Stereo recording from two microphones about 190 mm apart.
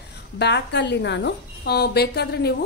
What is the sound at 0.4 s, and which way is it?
Speech, 65° left (ahead or behind).